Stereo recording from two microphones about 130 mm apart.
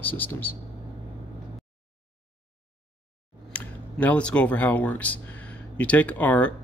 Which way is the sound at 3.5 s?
10° left (ahead or behind).